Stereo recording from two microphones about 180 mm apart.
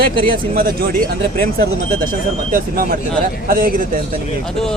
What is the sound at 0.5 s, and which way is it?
Speech, 55° right (ahead or behind).